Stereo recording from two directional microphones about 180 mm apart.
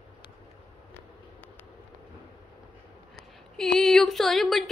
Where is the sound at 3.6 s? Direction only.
Centre (ahead or behind).